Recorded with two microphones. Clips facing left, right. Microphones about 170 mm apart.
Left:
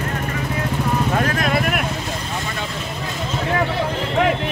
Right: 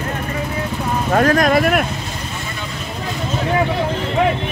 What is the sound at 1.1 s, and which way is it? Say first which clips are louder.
Speech: right 6 dB; 45° right (ahead or behind).